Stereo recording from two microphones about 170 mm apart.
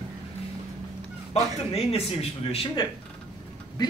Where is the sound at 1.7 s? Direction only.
35° left (ahead or behind).